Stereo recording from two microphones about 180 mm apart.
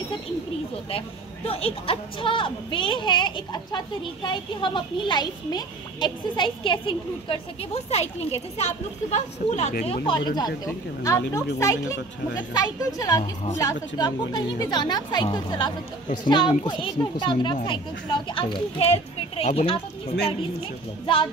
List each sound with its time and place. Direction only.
0.8 s speech: 30° left (ahead or behind)
10.0 s speech: 25° left (ahead or behind)
13.2 s a child's voice: 35° left (ahead or behind)
13.6 s a child's voice: 20° left (ahead or behind)